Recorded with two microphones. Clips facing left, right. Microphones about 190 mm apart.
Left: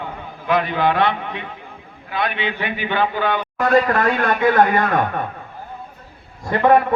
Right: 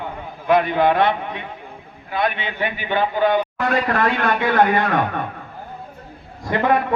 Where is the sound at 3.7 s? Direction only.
40° left (ahead or behind).